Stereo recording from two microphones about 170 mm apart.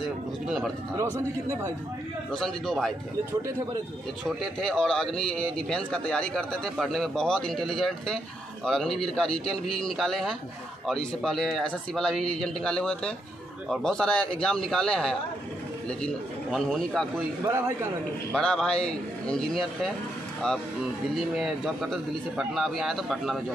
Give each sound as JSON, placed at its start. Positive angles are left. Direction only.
{"t": 0.9, "sound": "speech", "side_deg": -20}
{"t": 2.3, "sound": "speech", "side_deg": 0}
{"t": 4.2, "sound": "speech", "side_deg": 0}
{"t": 17.5, "sound": "a man's voice", "side_deg": -20}
{"t": 18.3, "sound": "speech", "side_deg": 5}
{"t": 21.1, "sound": "speech", "side_deg": 0}